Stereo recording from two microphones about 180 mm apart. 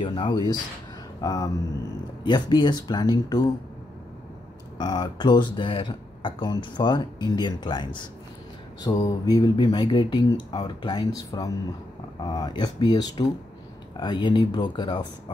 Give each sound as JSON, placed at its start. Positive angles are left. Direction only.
{"t": 0.0, "sound": "speech", "side_deg": 25}
{"t": 4.7, "sound": "speech", "side_deg": 25}